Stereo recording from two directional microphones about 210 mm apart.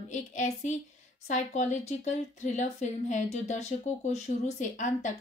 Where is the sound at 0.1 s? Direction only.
35° left (ahead or behind).